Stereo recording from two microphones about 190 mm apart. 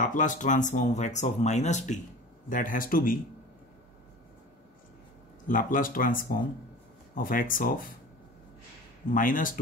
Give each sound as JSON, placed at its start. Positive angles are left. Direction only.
{"t": 0.0, "sound": "speech", "side_deg": 40}
{"t": 5.5, "sound": "speech", "side_deg": 45}
{"t": 9.1, "sound": "speech", "side_deg": 45}